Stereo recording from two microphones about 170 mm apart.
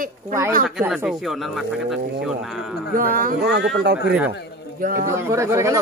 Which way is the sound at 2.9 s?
55° right (ahead or behind).